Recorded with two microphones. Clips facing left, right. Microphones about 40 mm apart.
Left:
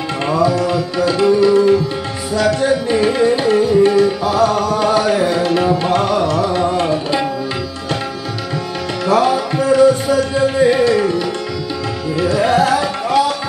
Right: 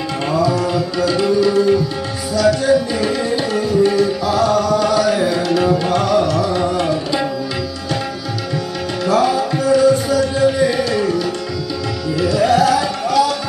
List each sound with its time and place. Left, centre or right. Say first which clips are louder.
0.3 s tabla: left 2 dB; left
9.0 s music: left 1 dB; left